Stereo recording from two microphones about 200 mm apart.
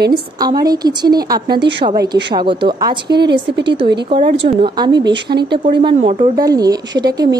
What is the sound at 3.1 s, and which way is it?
Speech, 55° right (ahead or behind).